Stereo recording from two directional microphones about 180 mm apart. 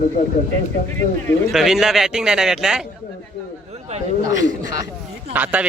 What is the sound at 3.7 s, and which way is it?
Speech, 35° right (ahead or behind).